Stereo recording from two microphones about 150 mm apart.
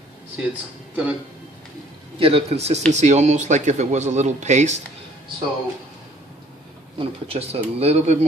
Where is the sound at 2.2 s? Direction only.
40° right (ahead or behind).